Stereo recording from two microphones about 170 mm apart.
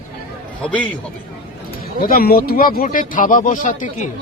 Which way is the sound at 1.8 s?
60° left (ahead or behind).